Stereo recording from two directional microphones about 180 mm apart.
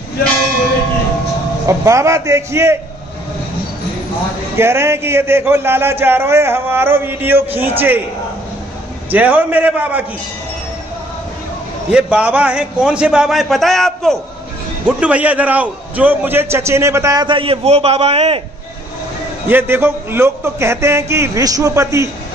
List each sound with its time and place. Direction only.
1.7 s a man's voice: 15° right (ahead or behind)
4.6 s a man's voice: 15° right (ahead or behind)
9.1 s a man's voice: 10° right (ahead or behind)
11.9 s a man's voice: 5° right (ahead or behind); by 18.4 s 35° right (ahead or behind)
19.4 s a man's voice: 10° right (ahead or behind)